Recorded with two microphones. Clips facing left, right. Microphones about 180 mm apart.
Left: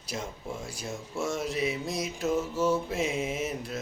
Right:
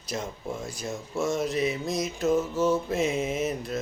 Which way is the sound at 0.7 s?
10° left (ahead or behind).